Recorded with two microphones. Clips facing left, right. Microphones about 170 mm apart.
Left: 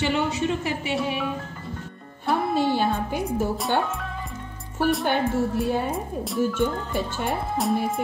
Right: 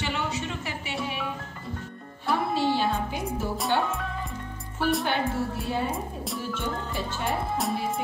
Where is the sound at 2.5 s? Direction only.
50° left (ahead or behind).